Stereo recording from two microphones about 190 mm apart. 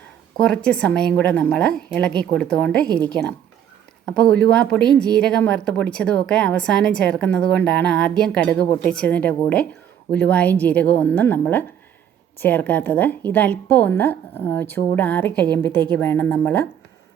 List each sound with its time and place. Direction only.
0.3 s speech: 5° left (ahead or behind)
4.0 s a woman's voice: 5° left (ahead or behind)